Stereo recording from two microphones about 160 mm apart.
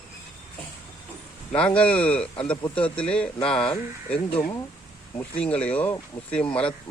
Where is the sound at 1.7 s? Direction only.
5° left (ahead or behind).